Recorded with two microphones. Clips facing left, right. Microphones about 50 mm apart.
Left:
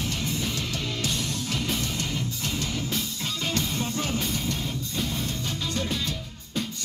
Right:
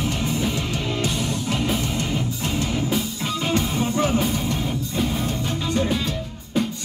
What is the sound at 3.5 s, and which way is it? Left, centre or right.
Music, right.